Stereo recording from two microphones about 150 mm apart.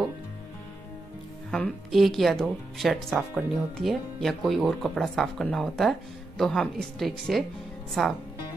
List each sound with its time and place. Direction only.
1.5 s speech: centre (ahead or behind)